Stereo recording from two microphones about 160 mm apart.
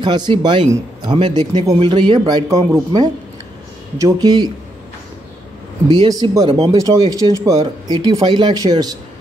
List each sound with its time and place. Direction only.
0.0 s speech: 30° right (ahead or behind)
1.4 s speech: 40° right (ahead or behind); by 4.5 s 25° right (ahead or behind)
6.0 s speech: 20° right (ahead or behind)